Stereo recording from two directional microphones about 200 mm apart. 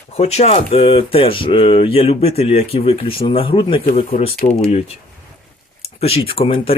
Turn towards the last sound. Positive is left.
turn(degrees=30)  # may be behind; listen again after turning